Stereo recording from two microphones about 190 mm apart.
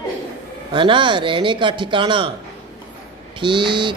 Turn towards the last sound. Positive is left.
turn(degrees=-25)  # may be behind; listen again after turning